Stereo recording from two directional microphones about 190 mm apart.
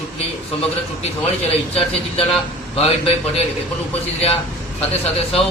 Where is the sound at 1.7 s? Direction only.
30° left (ahead or behind).